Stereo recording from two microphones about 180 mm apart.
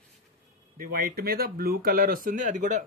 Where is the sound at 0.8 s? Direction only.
55° right (ahead or behind).